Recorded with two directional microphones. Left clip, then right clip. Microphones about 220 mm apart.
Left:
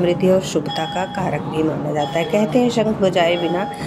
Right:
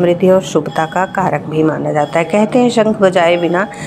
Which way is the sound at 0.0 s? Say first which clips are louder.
Right 6 dB; 10° right (ahead or behind).